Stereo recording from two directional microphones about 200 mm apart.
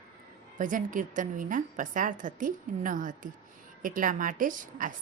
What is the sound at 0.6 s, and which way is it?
A woman's voice, 40° right (ahead or behind).